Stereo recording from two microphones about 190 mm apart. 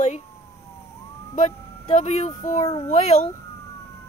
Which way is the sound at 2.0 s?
35° left (ahead or behind).